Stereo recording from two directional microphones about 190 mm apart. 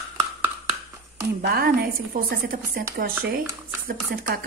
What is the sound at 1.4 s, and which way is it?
A woman's voice, 55° right (ahead or behind).